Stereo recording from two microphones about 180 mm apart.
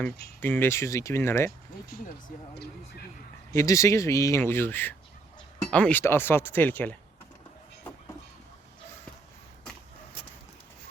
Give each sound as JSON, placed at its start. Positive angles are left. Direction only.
{"t": 0.3, "sound": "speech", "side_deg": 10}
{"t": 3.5, "sound": "speech", "side_deg": 15}